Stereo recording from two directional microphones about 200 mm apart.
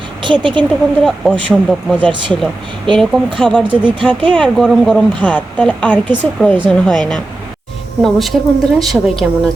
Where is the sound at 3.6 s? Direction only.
5° right (ahead or behind).